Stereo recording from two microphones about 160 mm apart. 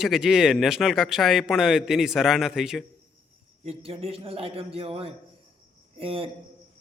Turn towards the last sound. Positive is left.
turn(degrees=-35)  # may be behind; listen again after turning